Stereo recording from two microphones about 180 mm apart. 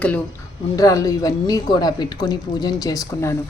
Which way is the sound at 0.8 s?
20° left (ahead or behind).